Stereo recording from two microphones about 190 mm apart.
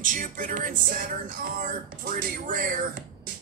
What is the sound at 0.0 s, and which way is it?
Music, 45° right (ahead or behind).